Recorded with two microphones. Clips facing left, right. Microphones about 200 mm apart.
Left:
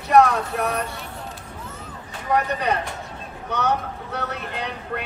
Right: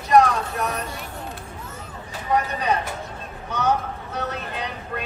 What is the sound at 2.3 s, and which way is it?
Speech, 65° left (ahead or behind).